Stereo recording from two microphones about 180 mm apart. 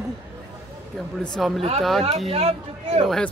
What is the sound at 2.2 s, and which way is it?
Speech, 35° right (ahead or behind).